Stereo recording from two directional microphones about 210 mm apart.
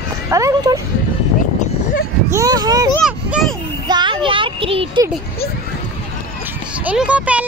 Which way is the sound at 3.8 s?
20° right (ahead or behind).